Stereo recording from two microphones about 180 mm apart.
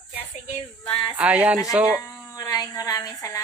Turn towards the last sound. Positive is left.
turn(degrees=15)  # may be behind; listen again after turning